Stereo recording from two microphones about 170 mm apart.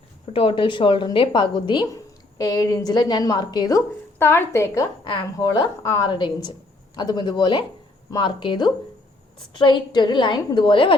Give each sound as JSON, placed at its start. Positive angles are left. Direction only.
{"t": 0.3, "sound": "a woman's voice", "side_deg": 30}